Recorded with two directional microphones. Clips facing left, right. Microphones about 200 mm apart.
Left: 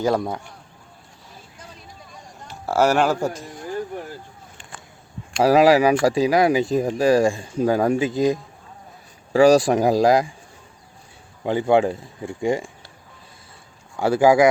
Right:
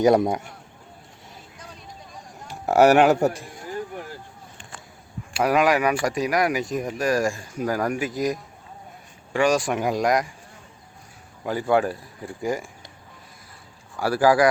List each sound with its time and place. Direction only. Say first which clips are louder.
0.0 s speech: right 4 dB; 15° right (ahead or behind)
2.5 s a sound: right 3 dB; 15° right (ahead or behind)
5.4 s speech: left 6 dB; 30° left (ahead or behind)
11.4 s speech: left 4 dB; 25° left (ahead or behind)
14.0 s speech: left 3 dB; 25° left (ahead or behind)